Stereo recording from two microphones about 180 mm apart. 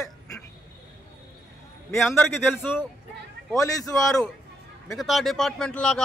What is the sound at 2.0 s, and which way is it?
Speech, 10° left (ahead or behind).